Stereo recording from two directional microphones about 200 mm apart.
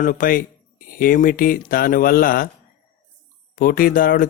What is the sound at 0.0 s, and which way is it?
Speech, 40° left (ahead or behind).